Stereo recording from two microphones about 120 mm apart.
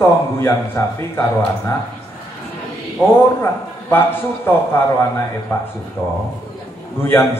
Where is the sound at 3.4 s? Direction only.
20° left (ahead or behind).